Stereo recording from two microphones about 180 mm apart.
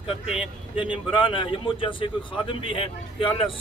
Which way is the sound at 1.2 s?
30° left (ahead or behind).